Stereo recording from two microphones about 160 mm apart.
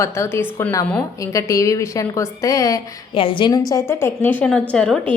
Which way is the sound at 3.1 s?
35° left (ahead or behind).